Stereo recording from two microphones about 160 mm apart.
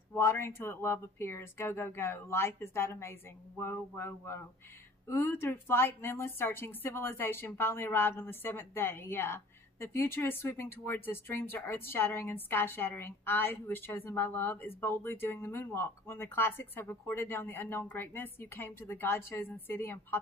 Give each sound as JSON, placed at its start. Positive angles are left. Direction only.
{"t": 0.1, "sound": "a woman's voice", "side_deg": 15}